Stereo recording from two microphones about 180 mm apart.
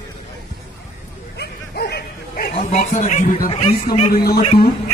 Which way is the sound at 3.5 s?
30° left (ahead or behind).